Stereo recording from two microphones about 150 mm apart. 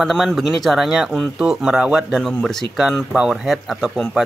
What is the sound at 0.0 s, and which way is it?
Speech, centre (ahead or behind).